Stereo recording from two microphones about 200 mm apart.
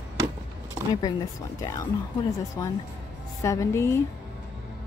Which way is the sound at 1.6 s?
15° left (ahead or behind).